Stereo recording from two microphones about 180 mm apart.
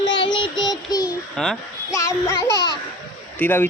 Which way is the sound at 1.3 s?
Centre (ahead or behind).